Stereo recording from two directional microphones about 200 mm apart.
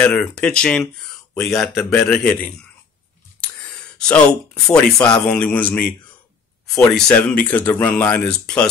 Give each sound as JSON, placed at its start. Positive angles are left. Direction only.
{"t": 0.0, "sound": "speech", "side_deg": 5}
{"t": 4.0, "sound": "speech", "side_deg": 5}
{"t": 4.9, "sound": "speech", "side_deg": 15}